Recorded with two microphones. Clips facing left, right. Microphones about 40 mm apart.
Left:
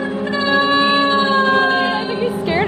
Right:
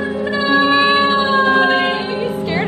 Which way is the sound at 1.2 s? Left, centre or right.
Centre.